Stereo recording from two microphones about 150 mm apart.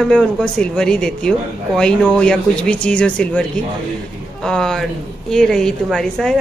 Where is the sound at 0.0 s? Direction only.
5° left (ahead or behind).